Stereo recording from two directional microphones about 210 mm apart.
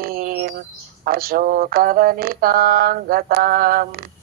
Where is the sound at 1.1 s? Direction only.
45° right (ahead or behind).